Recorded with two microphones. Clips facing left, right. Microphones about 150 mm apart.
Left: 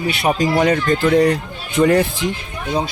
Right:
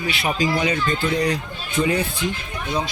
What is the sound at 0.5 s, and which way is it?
Speech, 50° left (ahead or behind).